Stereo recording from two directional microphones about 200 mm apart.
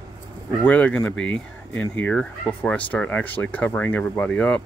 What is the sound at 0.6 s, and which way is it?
Speech, 5° left (ahead or behind).